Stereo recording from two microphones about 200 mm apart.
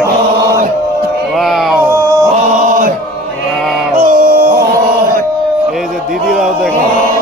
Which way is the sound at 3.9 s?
45° right (ahead or behind).